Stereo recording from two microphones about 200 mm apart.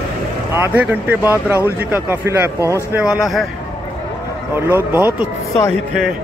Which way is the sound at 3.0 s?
Centre (ahead or behind).